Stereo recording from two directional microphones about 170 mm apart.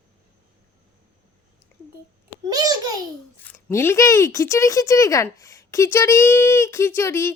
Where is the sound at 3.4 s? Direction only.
15° left (ahead or behind).